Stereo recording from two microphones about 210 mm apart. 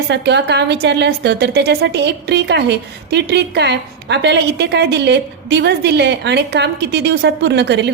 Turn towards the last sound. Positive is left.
turn(degrees=-55)  # may be behind; listen again after turning